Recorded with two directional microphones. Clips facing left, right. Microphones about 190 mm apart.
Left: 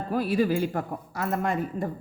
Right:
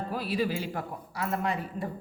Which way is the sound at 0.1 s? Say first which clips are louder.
Left 7 dB; 50° left (ahead or behind).